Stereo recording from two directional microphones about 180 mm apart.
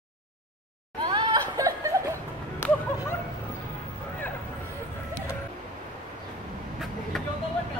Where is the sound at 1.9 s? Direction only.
20° right (ahead or behind).